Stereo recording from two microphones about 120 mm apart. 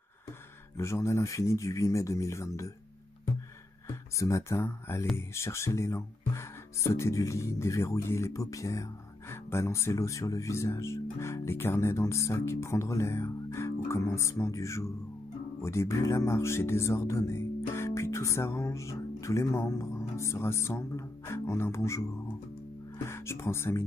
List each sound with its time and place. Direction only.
0.7 s speech: 20° left (ahead or behind)
3.8 s speech: 25° left (ahead or behind)
23.0 s speech: 20° left (ahead or behind)